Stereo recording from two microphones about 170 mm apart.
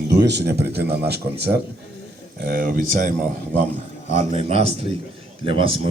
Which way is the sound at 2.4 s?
60° right (ahead or behind).